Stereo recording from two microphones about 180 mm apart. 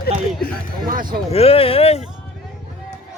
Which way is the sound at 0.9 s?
50° right (ahead or behind).